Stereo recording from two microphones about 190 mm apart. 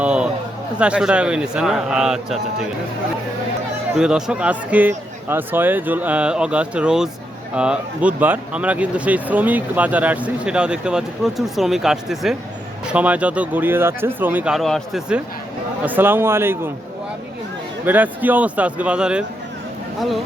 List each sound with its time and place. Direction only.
0.0 s a sound: 5° right (ahead or behind)
0.8 s a man's voice: 5° right (ahead or behind)
3.9 s speech: 5° right (ahead or behind)
17.8 s speech: 10° right (ahead or behind)